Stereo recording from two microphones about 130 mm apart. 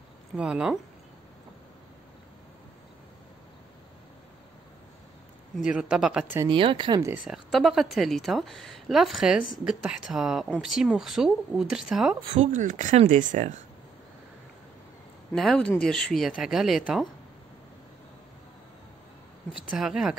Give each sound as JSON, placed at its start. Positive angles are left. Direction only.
{"t": 0.4, "sound": "speech", "side_deg": -5}
{"t": 5.6, "sound": "a woman's voice", "side_deg": -5}
{"t": 6.5, "sound": "speech", "side_deg": -40}
{"t": 7.2, "sound": "a woman's voice", "side_deg": 0}
{"t": 12.5, "sound": "speech", "side_deg": -80}
{"t": 13.1, "sound": "speech", "side_deg": -70}
{"t": 15.3, "sound": "a woman's voice", "side_deg": 5}
{"t": 19.8, "sound": "a woman's voice", "side_deg": -5}